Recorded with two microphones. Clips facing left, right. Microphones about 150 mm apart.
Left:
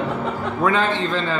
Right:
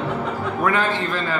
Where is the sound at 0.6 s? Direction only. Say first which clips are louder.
Left 2 dB; 20° left (ahead or behind).